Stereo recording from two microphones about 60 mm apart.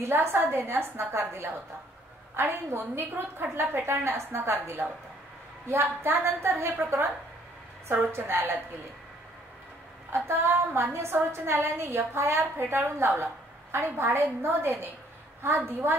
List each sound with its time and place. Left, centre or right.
0.0 s a woman's voice: right
8.1 s a woman's voice: right
10.1 s a woman's voice: right